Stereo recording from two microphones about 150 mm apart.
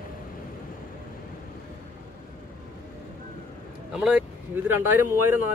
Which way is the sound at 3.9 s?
5° right (ahead or behind).